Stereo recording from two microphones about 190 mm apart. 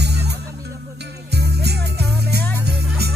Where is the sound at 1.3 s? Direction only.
60° right (ahead or behind).